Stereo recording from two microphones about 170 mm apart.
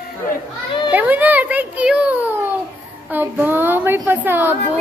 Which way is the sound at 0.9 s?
10° right (ahead or behind).